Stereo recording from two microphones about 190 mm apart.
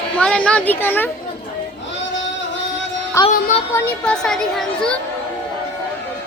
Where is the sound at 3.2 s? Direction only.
15° left (ahead or behind).